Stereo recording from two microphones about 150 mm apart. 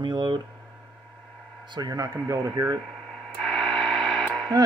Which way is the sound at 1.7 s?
25° right (ahead or behind).